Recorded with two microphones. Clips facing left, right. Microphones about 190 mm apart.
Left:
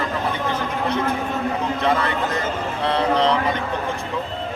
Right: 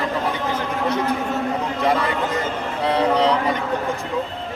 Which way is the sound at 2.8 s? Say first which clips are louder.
Right 1 dB; 10° right (ahead or behind).